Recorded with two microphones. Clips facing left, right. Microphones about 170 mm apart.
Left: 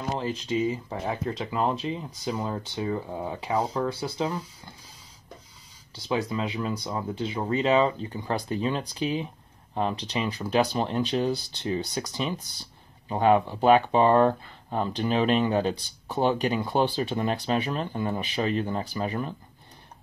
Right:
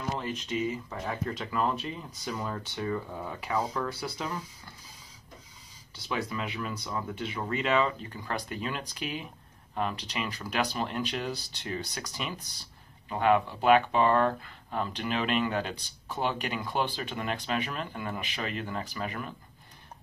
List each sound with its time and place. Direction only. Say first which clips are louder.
0.1 s speech: left 6 dB; 30° left (ahead or behind)
6.0 s speech: left 6 dB; 30° left (ahead or behind)